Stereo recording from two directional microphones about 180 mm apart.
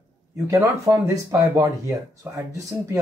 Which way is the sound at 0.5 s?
15° right (ahead or behind).